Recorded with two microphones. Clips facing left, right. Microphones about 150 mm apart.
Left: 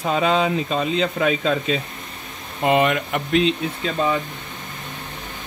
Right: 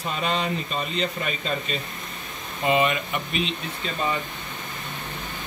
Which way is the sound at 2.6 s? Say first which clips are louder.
Left 4 dB; 70° left (ahead or behind).